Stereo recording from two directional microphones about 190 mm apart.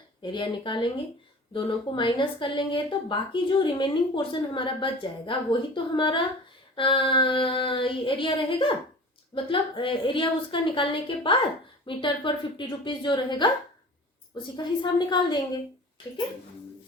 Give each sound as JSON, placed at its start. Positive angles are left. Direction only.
{"t": 0.2, "sound": "a woman's voice", "side_deg": 25}
{"t": 14.5, "sound": "a woman's voice", "side_deg": 25}